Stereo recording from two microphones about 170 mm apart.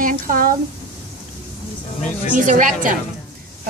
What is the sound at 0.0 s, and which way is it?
Speech, 55° right (ahead or behind).